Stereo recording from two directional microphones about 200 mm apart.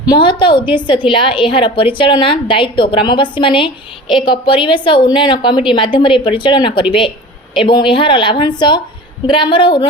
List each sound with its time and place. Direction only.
0.0 s a woman's voice: 20° left (ahead or behind)